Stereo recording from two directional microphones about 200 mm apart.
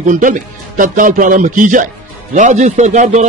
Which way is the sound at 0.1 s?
40° right (ahead or behind).